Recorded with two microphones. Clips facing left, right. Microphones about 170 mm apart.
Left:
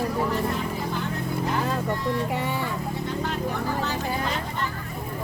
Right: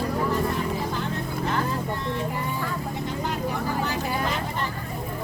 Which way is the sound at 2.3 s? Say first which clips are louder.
Left 3 dB; 80° left.